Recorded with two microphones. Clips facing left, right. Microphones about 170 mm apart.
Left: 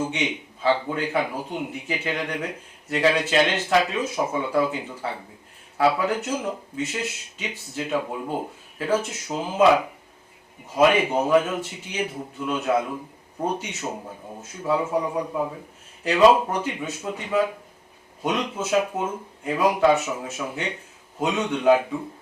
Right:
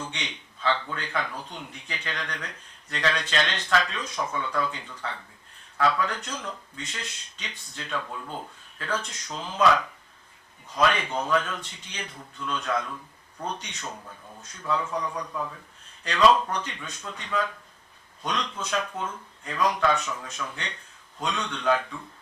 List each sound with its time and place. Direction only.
0.0 s a man's voice: 10° left (ahead or behind)
10.8 s a man's voice: 10° left (ahead or behind)
15.0 s a man's voice: 25° left (ahead or behind)
16.0 s a man's voice: 10° left (ahead or behind)